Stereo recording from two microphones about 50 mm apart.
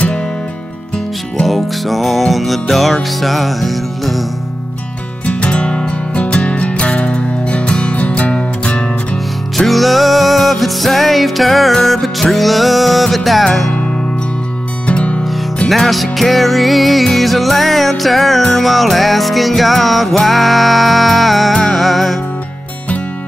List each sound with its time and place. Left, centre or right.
0.9 s music: centre
5.2 s music: left
9.7 s music: centre
14.9 s music: left
15.7 s music: centre